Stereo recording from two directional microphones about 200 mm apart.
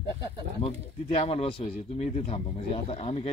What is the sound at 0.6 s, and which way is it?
Speech, 30° left (ahead or behind).